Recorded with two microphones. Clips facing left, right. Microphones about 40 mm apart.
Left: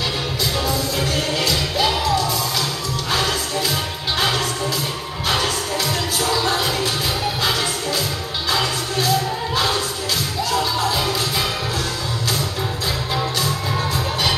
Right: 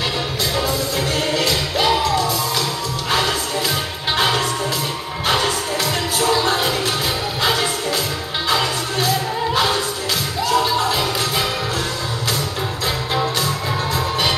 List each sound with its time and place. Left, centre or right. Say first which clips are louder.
0.6 s music: right 2 dB; centre
3.1 s music: right 2 dB; centre
9.0 s music: right 1 dB; right
13.1 s music: right 2 dB; centre